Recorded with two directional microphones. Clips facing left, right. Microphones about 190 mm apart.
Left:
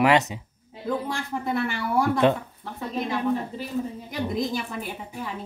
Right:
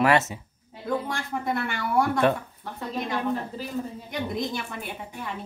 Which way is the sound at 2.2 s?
20° left (ahead or behind).